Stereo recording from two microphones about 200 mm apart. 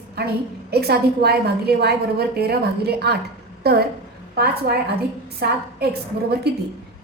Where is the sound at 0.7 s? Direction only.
55° right (ahead or behind).